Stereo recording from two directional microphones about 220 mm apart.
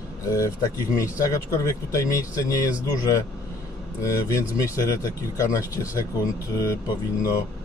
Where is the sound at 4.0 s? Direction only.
15° left (ahead or behind).